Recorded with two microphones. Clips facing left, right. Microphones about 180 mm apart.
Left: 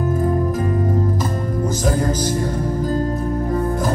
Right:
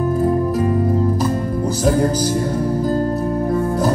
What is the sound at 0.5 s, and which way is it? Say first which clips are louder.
Music: right 3 dB; 35° right (ahead or behind).